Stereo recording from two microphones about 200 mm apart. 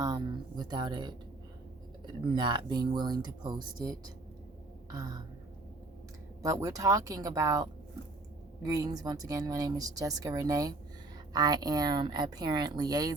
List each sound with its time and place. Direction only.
0.0 s speech: 20° right (ahead or behind)
2.3 s speech: 20° right (ahead or behind)
6.4 s speech: 15° right (ahead or behind)